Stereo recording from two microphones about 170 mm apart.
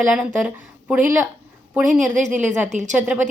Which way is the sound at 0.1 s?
5° right (ahead or behind).